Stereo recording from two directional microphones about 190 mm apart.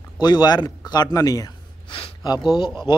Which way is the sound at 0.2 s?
20° left (ahead or behind).